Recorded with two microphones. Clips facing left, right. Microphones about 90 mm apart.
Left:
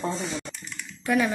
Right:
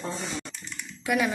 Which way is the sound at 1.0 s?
10° right (ahead or behind).